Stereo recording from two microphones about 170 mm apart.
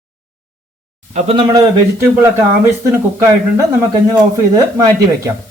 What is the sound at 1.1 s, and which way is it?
Speech, 35° right (ahead or behind).